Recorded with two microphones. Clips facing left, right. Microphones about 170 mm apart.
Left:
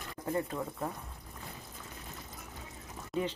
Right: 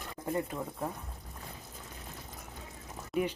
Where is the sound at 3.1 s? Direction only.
10° right (ahead or behind).